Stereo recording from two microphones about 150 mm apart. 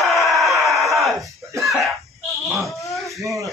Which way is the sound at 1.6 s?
Centre (ahead or behind).